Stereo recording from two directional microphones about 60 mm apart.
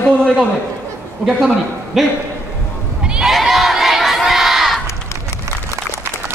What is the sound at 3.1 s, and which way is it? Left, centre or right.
Crowd, centre.